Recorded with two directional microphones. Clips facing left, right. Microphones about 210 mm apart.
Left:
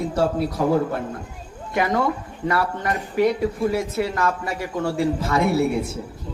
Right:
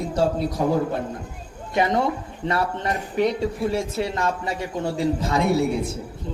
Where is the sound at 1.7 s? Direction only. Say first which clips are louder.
Even; 25° right (ahead or behind).